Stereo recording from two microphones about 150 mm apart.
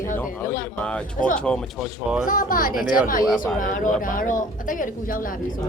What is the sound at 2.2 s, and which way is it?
A woman's voice, 65° left (ahead or behind).